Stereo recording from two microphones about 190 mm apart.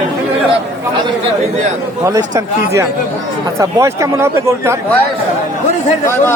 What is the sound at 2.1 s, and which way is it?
Speech, 20° right (ahead or behind).